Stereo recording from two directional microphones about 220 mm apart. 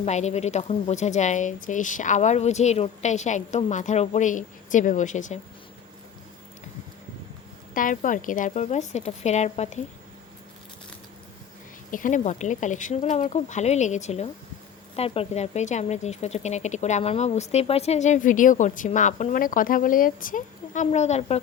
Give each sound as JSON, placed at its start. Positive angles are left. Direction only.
{"t": 0.0, "sound": "speech", "side_deg": 30}
{"t": 7.7, "sound": "speech", "side_deg": 40}
{"t": 11.9, "sound": "speech", "side_deg": 35}